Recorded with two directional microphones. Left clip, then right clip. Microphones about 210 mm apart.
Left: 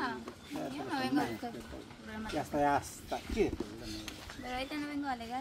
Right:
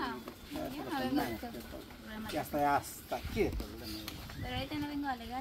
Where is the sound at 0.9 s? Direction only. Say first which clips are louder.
Left 1 dB; 20° left (ahead or behind).